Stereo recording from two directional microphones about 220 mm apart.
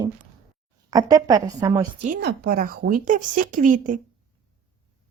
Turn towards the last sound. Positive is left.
turn(degrees=-35)  # may be behind; listen again after turning